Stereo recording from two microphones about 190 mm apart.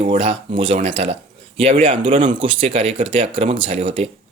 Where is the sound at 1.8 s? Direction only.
30° right (ahead or behind).